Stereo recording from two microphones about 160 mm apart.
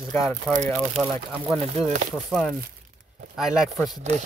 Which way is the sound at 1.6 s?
45° right (ahead or behind).